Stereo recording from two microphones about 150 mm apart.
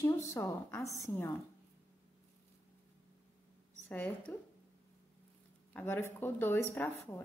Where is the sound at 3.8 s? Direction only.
10° left (ahead or behind).